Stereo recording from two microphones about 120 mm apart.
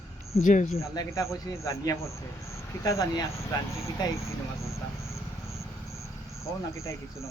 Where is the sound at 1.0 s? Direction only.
25° left (ahead or behind).